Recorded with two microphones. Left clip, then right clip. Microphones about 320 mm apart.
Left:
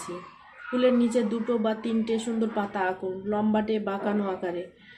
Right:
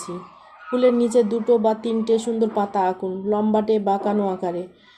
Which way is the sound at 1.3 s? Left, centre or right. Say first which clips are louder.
Right 9 dB; right.